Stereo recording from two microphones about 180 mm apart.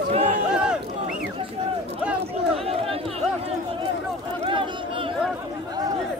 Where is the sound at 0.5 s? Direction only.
5° right (ahead or behind).